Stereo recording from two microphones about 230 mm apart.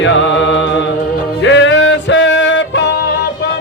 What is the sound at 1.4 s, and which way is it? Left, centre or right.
Music, left.